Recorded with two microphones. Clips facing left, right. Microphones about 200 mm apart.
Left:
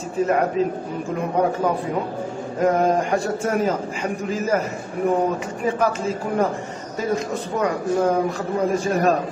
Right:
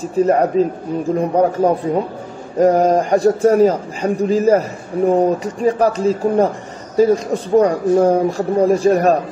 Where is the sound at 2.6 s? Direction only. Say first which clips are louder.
Right 6 dB; 35° right (ahead or behind).